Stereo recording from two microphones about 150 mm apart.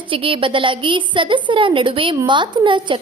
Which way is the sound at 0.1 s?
35° right (ahead or behind).